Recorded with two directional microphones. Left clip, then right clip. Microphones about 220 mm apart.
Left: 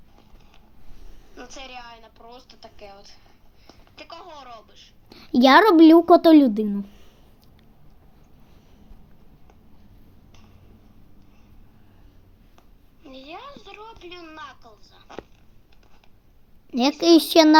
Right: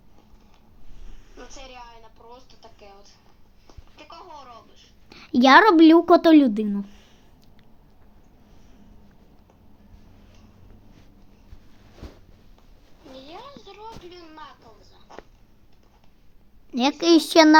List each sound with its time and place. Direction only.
1.4 s a woman's voice: 50° left (ahead or behind)
5.0 s a woman's voice: 5° left (ahead or behind)
13.1 s a sound: 50° left (ahead or behind)
17.0 s a woman's voice: 5° left (ahead or behind)